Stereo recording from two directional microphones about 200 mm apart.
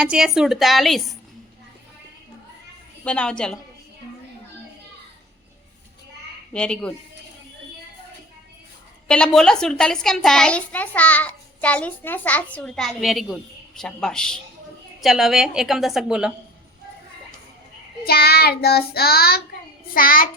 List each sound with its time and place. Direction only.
0.0 s a woman's voice: 5° right (ahead or behind)
3.0 s a woman's voice: 5° left (ahead or behind)
6.5 s a woman's voice: 5° left (ahead or behind)
9.0 s a woman's voice: 5° left (ahead or behind)
18.0 s child singing: 50° left (ahead or behind)